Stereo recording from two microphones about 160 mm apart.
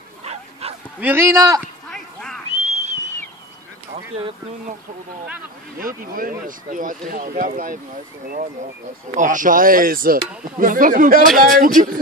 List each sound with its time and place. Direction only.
0.2 s bow-wow: 40° right (ahead or behind)
0.9 s a man's voice: 10° right (ahead or behind)
1.9 s quack: 5° left (ahead or behind)
2.5 s whistling: 45° right (ahead or behind)
5.8 s speech: 60° right (ahead or behind)
9.1 s speech: 55° right (ahead or behind)